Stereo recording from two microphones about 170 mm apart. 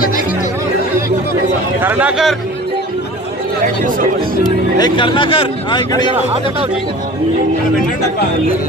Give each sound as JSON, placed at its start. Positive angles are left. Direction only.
{"t": 1.8, "sound": "speech", "side_deg": -10}
{"t": 4.7, "sound": "speech", "side_deg": 25}